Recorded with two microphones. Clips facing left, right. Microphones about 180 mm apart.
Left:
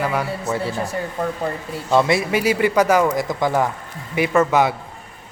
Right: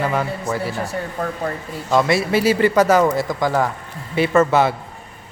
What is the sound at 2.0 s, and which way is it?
Speech, 20° left (ahead or behind).